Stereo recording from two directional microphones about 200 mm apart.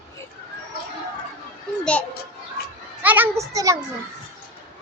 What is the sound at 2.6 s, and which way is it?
Children playing, 50° left (ahead or behind).